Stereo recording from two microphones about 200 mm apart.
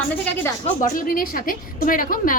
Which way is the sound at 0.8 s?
45° left (ahead or behind).